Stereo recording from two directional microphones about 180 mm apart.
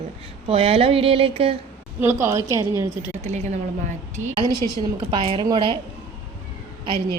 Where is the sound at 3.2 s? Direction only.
40° right (ahead or behind).